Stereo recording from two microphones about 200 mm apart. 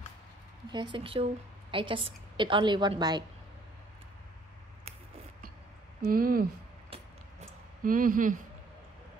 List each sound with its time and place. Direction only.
0.7 s a woman's voice: 25° right (ahead or behind)
6.0 s speech: 45° right (ahead or behind)
7.8 s speech: 45° right (ahead or behind)